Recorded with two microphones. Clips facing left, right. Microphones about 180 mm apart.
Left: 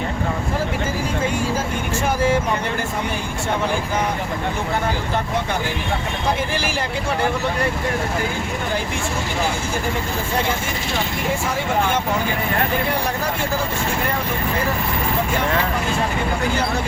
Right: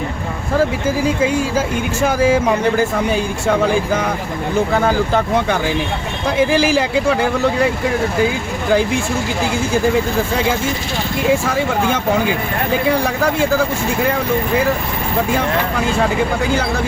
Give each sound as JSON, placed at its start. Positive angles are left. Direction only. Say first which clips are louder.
{"t": 1.2, "sound": "speech", "louder": "right 5 dB", "side_deg": -90}
{"t": 4.8, "sound": "speech", "louder": "right 7 dB", "side_deg": -90}